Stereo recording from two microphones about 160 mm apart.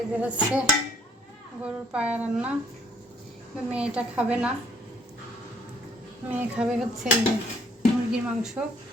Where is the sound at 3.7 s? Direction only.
5° right (ahead or behind).